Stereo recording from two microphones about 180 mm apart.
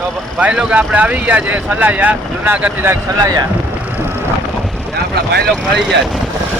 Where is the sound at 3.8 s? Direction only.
10° right (ahead or behind).